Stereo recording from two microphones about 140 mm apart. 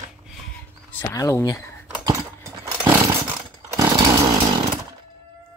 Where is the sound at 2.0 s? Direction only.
20° right (ahead or behind).